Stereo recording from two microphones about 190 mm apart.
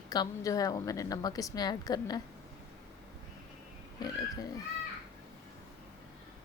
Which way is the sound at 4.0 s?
20° left (ahead or behind).